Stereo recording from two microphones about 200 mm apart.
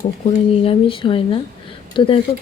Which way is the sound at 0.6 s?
25° left (ahead or behind).